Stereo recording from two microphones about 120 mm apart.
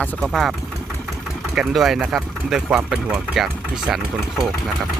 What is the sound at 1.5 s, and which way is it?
Speech, centre (ahead or behind).